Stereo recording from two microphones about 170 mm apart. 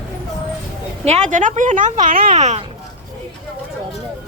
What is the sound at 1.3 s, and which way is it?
A woman's voice, 50° right (ahead or behind).